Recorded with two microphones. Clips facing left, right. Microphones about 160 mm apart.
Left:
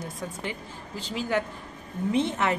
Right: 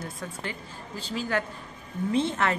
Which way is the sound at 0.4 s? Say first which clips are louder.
Left 2 dB; 15° left (ahead or behind).